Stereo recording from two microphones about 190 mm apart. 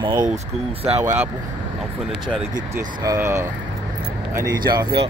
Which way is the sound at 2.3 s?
25° right (ahead or behind).